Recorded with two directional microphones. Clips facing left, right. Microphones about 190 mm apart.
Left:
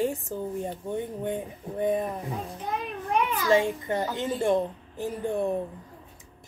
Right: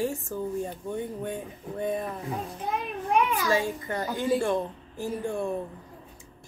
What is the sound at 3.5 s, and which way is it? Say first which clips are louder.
A child's voice: left 4 dB; 25° left (ahead or behind).